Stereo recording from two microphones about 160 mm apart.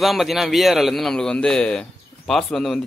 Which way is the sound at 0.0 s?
Centre (ahead or behind).